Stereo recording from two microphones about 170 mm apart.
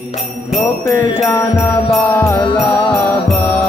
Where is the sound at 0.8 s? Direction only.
20° left (ahead or behind).